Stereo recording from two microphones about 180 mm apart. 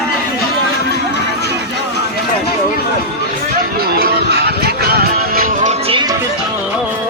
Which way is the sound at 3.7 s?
60° right (ahead or behind).